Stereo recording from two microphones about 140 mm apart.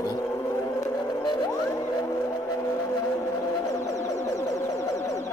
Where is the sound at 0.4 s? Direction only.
20° left (ahead or behind).